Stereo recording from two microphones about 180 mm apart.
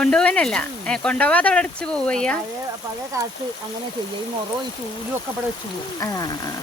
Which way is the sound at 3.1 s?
15° right (ahead or behind).